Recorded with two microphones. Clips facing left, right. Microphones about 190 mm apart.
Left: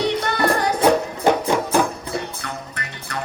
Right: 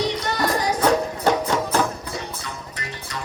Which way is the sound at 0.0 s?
60° left (ahead or behind).